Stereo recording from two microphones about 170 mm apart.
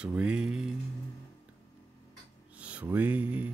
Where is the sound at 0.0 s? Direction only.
5° right (ahead or behind).